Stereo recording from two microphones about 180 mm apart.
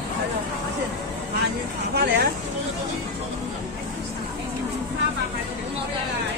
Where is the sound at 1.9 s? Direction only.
65° right (ahead or behind).